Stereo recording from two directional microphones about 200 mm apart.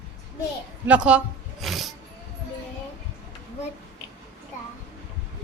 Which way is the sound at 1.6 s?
Centre (ahead or behind).